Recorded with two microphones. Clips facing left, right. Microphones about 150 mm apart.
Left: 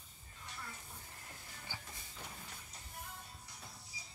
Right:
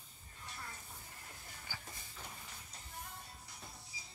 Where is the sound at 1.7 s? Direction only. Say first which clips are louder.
Left 1 dB; 25° left (ahead or behind).